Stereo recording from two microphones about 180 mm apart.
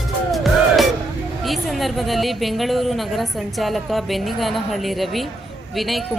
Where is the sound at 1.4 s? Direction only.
Centre (ahead or behind).